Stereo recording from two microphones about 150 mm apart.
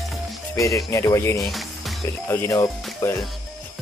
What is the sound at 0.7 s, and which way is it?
Speech, 20° left (ahead or behind).